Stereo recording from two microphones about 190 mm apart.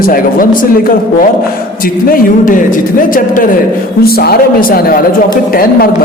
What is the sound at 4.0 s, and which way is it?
A man's voice, 55° left (ahead or behind).